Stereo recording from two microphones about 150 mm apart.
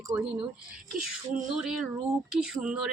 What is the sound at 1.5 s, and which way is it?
A woman's voice, 5° right (ahead or behind).